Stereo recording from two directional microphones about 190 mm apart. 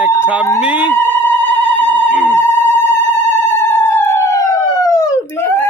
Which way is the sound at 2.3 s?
10° left (ahead or behind).